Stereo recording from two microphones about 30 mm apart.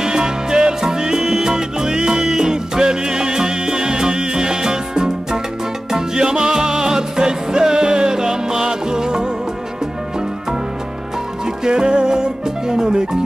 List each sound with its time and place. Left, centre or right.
0.0 s music: right
11.4 s music: right